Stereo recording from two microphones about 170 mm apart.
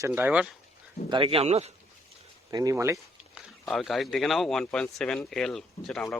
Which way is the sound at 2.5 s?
20° right (ahead or behind).